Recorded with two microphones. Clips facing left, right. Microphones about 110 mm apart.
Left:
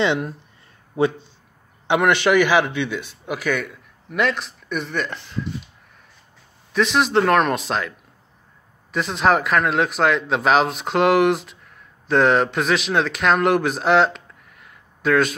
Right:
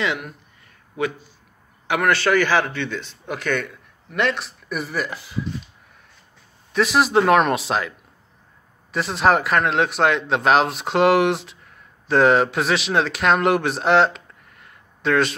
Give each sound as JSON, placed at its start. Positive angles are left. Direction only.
{"t": 0.0, "sound": "a man's voice", "side_deg": 30}
{"t": 6.7, "sound": "a man's voice", "side_deg": -5}
{"t": 8.9, "sound": "a man's voice", "side_deg": 0}